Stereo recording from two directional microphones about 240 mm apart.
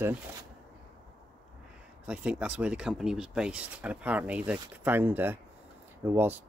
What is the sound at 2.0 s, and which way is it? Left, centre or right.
Speech, centre.